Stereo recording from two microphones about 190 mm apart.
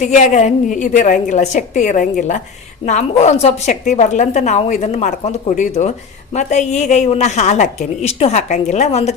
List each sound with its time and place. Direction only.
0.0 s a woman's voice: 40° left (ahead or behind)